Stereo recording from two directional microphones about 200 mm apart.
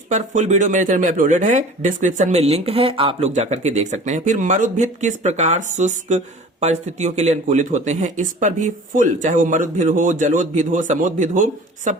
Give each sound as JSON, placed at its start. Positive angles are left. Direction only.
{"t": 0.1, "sound": "speech", "side_deg": -35}